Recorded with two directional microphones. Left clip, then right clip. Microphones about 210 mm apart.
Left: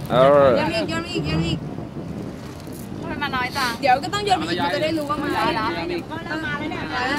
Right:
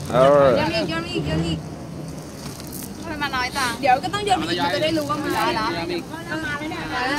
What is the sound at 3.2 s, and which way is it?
Vehicle, 15° left (ahead or behind).